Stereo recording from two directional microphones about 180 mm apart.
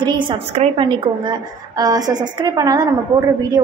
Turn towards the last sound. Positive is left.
turn(degrees=-20)  # may be behind; listen again after turning